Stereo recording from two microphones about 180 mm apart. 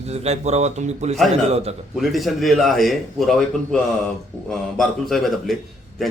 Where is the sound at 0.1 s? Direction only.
35° right (ahead or behind).